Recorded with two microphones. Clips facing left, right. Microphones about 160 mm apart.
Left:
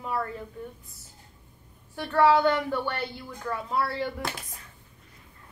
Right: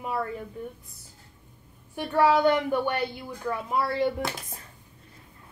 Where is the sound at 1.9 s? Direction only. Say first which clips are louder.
Left 1 dB; 15° right (ahead or behind).